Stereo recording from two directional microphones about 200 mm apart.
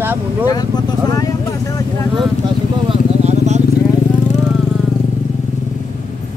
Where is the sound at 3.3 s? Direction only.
35° right (ahead or behind).